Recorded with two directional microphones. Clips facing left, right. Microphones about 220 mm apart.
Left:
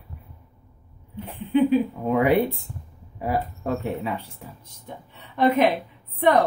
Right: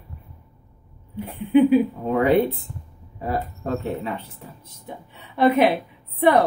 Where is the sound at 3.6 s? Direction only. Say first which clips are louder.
Even; 10° left (ahead or behind).